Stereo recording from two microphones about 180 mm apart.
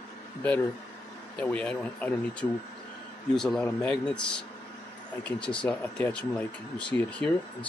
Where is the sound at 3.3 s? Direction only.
5° left (ahead or behind).